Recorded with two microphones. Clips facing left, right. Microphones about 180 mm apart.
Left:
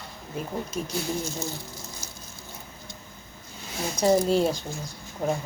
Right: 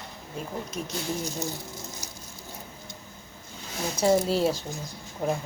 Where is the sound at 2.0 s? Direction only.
15° right (ahead or behind).